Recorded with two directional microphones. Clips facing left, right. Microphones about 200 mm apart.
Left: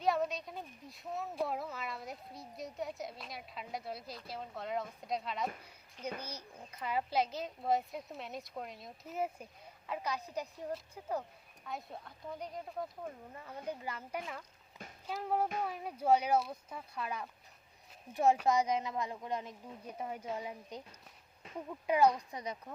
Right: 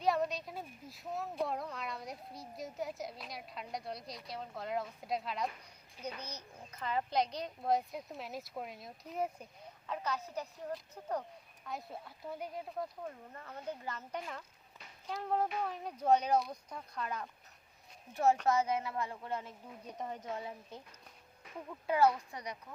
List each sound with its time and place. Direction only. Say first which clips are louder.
0.0 s a woman's voice: even; centre (ahead or behind); by 22.5 s 20° left (ahead or behind)